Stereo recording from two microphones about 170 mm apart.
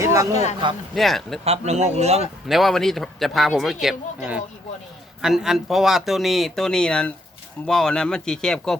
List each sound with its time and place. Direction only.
0.0 s a sound: 20° right (ahead or behind)
0.9 s speech: centre (ahead or behind)
1.5 s a man's voice: 40° right (ahead or behind)
2.5 s speech: centre (ahead or behind)